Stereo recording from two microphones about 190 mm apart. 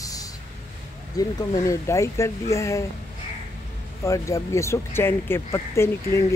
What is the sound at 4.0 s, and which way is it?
Speech, 15° left (ahead or behind).